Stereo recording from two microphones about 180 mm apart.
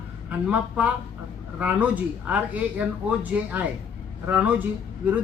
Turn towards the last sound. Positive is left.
turn(degrees=-10)  # may be behind; listen again after turning